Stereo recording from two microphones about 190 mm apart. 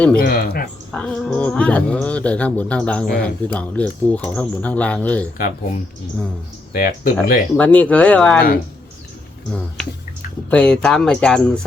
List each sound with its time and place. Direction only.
0.2 s speech: 55° left (ahead or behind)
0.9 s speech: 5° left (ahead or behind)
6.7 s speech: 50° left (ahead or behind)
7.5 s speech: 5° left (ahead or behind)
9.5 s speech: 5° left (ahead or behind)